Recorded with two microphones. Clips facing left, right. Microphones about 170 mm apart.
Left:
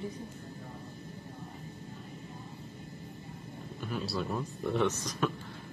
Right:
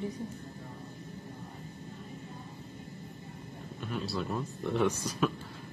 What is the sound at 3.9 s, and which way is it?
Speech, centre (ahead or behind).